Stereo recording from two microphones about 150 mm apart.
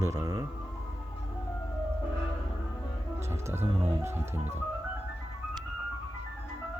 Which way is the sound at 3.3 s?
15° right (ahead or behind).